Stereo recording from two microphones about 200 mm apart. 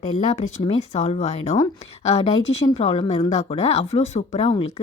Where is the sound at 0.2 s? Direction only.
35° left (ahead or behind).